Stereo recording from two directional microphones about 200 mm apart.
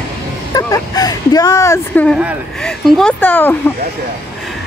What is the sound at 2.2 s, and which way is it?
Speech, centre (ahead or behind).